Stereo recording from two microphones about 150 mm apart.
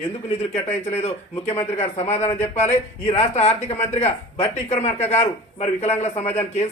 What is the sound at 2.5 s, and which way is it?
Speech, 50° left (ahead or behind).